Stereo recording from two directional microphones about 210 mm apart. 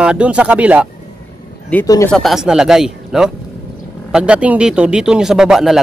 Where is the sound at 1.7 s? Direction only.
15° left (ahead or behind).